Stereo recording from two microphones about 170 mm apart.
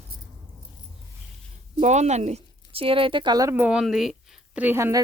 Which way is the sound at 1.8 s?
45° right (ahead or behind).